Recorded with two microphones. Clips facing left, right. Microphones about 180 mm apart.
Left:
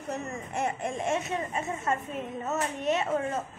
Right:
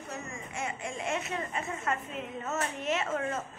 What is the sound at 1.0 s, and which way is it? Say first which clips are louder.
Speech: left 3 dB; 30° left (ahead or behind).